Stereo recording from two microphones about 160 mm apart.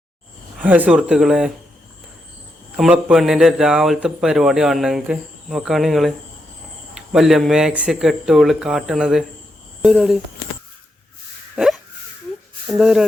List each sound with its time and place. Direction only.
0.5 s speech: 10° right (ahead or behind)
2.7 s speech: 5° right (ahead or behind)
11.5 s hiccup: 5° right (ahead or behind)
12.6 s speech: 5° right (ahead or behind)